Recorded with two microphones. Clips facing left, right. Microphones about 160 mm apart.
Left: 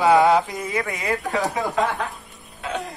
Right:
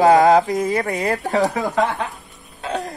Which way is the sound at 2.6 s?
35° right (ahead or behind).